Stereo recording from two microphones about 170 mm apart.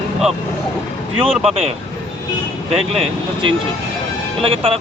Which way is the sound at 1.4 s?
35° right (ahead or behind).